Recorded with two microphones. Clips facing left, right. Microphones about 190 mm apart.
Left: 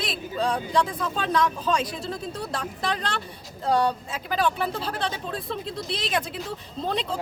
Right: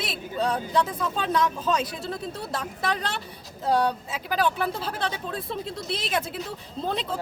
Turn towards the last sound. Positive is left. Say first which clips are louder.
# left 1 dB
turn(degrees=-5)  # may be behind; listen again after turning